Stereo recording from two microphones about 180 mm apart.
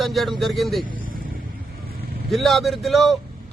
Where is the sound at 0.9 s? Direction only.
50° right (ahead or behind).